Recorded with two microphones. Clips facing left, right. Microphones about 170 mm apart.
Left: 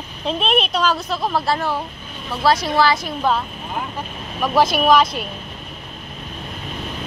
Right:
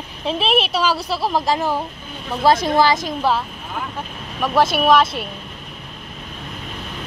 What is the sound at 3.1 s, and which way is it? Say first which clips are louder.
Speech: even; 5° right (ahead or behind).